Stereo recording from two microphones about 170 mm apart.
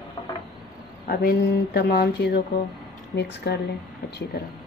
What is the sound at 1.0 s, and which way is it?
A woman's voice, 65° left (ahead or behind).